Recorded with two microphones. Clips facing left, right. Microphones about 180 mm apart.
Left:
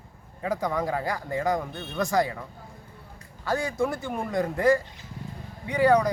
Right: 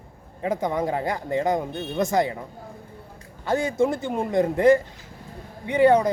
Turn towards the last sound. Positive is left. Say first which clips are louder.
# right 3 dB
turn(degrees=-25)  # may be behind; listen again after turning